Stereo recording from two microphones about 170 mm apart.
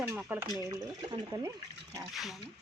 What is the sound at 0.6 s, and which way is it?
Speech, 20° right (ahead or behind).